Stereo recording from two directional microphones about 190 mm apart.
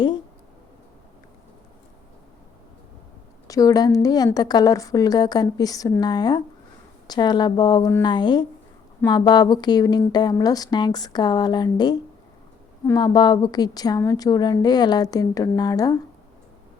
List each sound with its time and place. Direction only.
3.4 s a woman's voice: 20° left (ahead or behind)